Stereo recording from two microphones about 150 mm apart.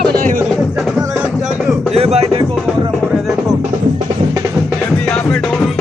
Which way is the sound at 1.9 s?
45° right (ahead or behind).